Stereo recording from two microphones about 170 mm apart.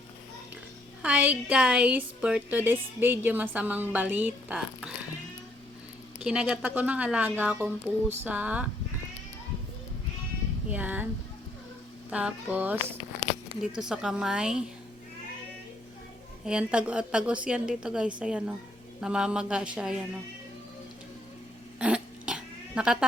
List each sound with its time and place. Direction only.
1.0 s a woman's voice: 10° right (ahead or behind)
6.1 s a woman's voice: 5° right (ahead or behind)
10.7 s a woman's voice: 10° right (ahead or behind)
12.1 s a woman's voice: 10° right (ahead or behind)
16.5 s a woman's voice: 5° right (ahead or behind)
21.8 s cat: 5° right (ahead or behind)